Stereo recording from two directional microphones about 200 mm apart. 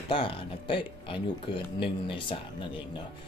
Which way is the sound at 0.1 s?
25° left (ahead or behind).